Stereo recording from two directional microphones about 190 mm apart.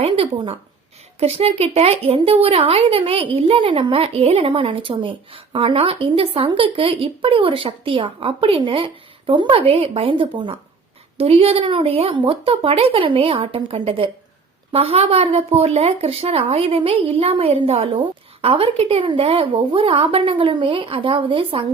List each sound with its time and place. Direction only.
0.0 s speech: 30° right (ahead or behind)